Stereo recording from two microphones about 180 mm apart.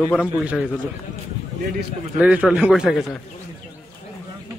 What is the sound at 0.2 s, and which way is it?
Speech, 5° right (ahead or behind).